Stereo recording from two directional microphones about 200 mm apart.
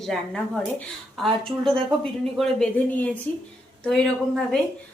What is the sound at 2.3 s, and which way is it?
Speech, centre (ahead or behind).